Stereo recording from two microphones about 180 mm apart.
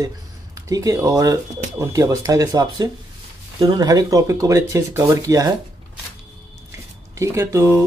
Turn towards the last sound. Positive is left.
turn(degrees=-15)  # may be behind; listen again after turning